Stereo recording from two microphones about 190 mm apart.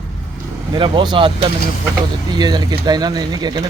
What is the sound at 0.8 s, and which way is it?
Speech, 25° right (ahead or behind).